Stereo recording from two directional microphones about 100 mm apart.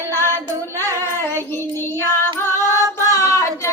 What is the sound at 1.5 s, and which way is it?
Child singing, 25° left (ahead or behind).